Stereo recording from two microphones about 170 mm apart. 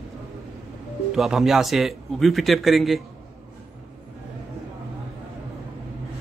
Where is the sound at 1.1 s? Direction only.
Centre (ahead or behind).